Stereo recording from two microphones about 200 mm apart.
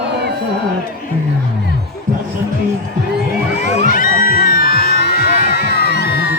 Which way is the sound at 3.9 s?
45° left (ahead or behind).